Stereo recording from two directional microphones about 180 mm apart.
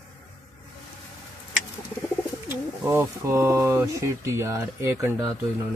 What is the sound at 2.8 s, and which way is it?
Speech, 15° right (ahead or behind).